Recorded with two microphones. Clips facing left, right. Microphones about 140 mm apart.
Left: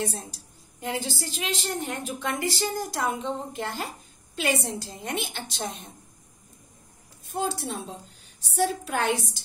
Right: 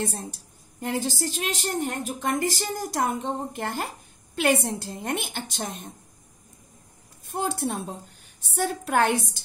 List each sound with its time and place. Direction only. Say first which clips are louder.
0.0 s a woman's voice: right 1 dB; 50° right (ahead or behind)
7.2 s a woman's voice: right 2 dB; 55° right (ahead or behind)